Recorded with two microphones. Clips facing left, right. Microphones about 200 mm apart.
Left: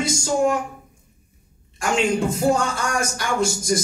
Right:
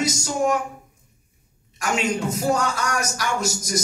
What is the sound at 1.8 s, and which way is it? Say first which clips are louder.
A man's voice: left 3 dB; 30° left (ahead or behind).